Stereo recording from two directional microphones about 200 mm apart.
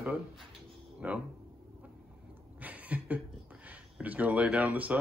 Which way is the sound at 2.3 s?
10° right (ahead or behind).